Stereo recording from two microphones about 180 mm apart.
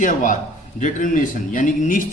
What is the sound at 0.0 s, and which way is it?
A man's voice, 45° left (ahead or behind).